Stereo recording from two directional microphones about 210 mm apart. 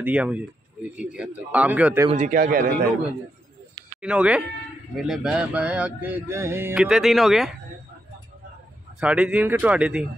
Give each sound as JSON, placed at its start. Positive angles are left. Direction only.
{"t": 0.0, "sound": "speech", "side_deg": -5}
{"t": 2.0, "sound": "a man's voice", "side_deg": -35}
{"t": 4.0, "sound": "speech", "side_deg": -5}
{"t": 9.0, "sound": "speech", "side_deg": -5}